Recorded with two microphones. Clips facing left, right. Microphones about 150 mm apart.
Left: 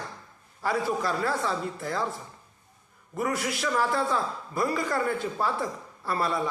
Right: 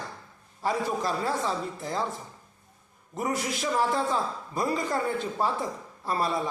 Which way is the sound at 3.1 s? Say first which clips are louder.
Left 1 dB; 20° right (ahead or behind).